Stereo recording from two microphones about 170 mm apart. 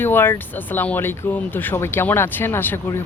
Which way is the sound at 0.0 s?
10° left (ahead or behind).